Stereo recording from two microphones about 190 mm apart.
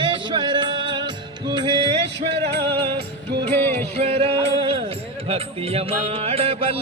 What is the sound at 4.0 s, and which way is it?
Music, 30° right (ahead or behind).